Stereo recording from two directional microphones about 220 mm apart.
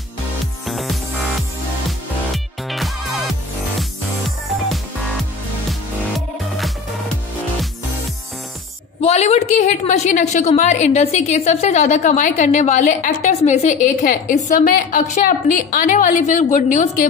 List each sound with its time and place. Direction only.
0.7 s music: centre (ahead or behind)
5.7 s music: centre (ahead or behind)
9.0 s a woman's voice: 30° left (ahead or behind)